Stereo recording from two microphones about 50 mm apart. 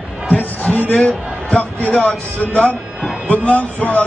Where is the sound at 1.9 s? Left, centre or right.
Centre.